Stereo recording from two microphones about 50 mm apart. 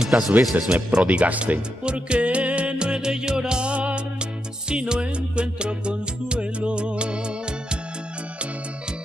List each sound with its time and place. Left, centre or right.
0.4 s speech: centre
0.9 s music: right